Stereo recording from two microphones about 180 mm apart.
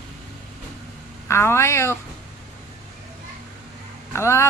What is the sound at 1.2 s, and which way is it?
Speech, 15° left (ahead or behind).